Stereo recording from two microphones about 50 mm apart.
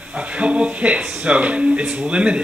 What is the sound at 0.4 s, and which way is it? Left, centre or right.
Speech, right.